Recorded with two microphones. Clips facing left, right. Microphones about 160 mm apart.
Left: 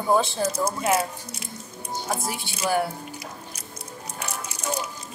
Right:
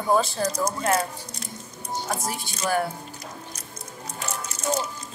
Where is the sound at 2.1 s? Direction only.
5° left (ahead or behind).